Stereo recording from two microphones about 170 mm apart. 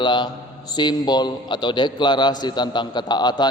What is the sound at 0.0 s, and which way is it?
A man's voice, 25° left (ahead or behind).